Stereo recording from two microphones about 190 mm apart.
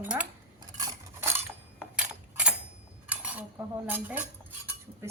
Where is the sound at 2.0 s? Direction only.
5° right (ahead or behind).